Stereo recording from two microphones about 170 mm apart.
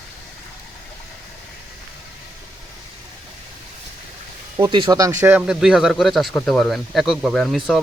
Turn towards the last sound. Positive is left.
turn(degrees=0)  # may be behind; listen again after turning